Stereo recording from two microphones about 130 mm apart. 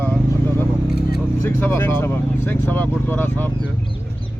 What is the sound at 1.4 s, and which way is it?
Speech, 20° left (ahead or behind).